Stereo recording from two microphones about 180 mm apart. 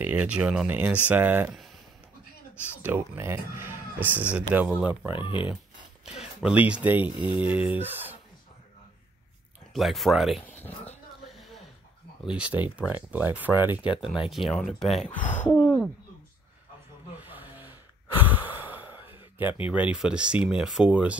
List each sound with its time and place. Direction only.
0.0 s speech: 10° right (ahead or behind)
2.8 s speech: 15° right (ahead or behind)
5.1 s speech: 25° left (ahead or behind)
6.0 s speech: 5° right (ahead or behind)
7.2 s speech: 25° left (ahead or behind)
7.4 s speech: 10° right (ahead or behind)
9.8 s speech: centre (ahead or behind)
12.3 s speech: 5° right (ahead or behind)
15.0 s speech: 40° left (ahead or behind)
15.6 s a sound: 10° left (ahead or behind)
17.2 s sigh: 10° right (ahead or behind)
19.7 s speech: 5° right (ahead or behind)